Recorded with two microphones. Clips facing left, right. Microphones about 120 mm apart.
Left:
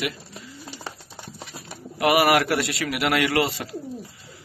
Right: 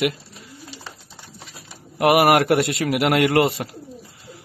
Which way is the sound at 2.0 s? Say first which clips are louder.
Right 3 dB; 50° right (ahead or behind).